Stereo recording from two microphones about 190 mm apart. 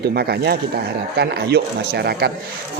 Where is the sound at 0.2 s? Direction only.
55° right (ahead or behind).